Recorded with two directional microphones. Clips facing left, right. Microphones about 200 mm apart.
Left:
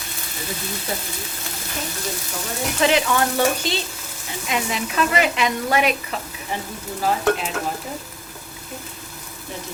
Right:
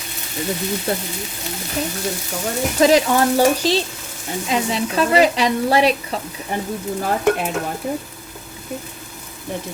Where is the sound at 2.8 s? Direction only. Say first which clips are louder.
Right 5 dB; 35° right (ahead or behind).